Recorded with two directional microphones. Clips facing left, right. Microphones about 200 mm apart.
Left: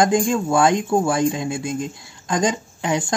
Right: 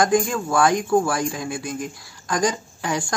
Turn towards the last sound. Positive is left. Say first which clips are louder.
# left 3 dB
turn(degrees=20)  # may be behind; listen again after turning